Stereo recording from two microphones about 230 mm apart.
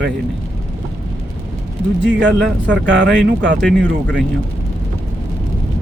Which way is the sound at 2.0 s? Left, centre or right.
Right.